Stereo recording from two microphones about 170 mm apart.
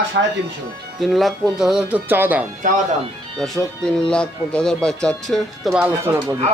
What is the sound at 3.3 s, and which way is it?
Speech, centre (ahead or behind).